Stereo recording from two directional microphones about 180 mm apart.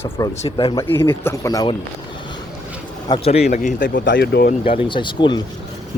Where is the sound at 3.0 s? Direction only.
30° left (ahead or behind).